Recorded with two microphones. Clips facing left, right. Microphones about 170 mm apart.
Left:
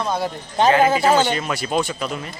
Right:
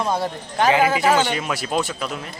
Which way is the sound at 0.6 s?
25° left (ahead or behind).